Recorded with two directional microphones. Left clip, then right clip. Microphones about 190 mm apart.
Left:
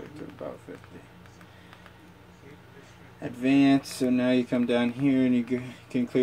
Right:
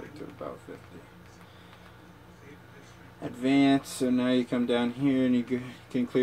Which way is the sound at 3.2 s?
20° left (ahead or behind).